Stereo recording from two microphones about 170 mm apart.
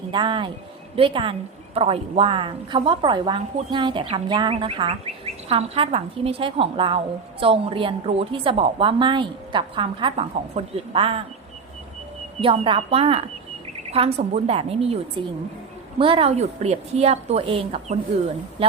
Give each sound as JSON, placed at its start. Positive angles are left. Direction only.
{"t": 0.1, "sound": "a woman's voice", "side_deg": -30}
{"t": 12.4, "sound": "a woman's voice", "side_deg": -30}